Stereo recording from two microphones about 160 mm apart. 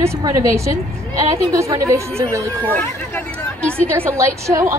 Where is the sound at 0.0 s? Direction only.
20° right (ahead or behind).